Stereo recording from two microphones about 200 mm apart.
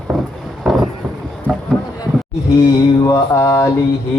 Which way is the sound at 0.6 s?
Centre (ahead or behind).